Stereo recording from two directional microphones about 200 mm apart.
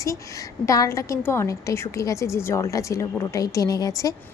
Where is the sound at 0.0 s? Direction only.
15° left (ahead or behind).